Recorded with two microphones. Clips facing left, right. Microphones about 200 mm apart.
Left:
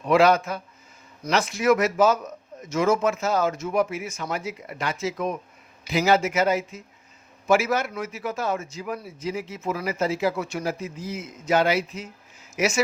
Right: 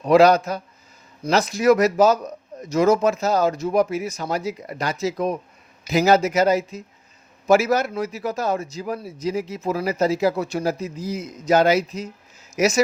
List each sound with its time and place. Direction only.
0.0 s a man's voice: 40° right (ahead or behind)